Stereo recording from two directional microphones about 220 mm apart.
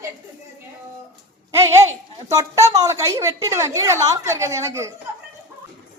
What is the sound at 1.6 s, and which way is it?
A woman's voice, 15° right (ahead or behind).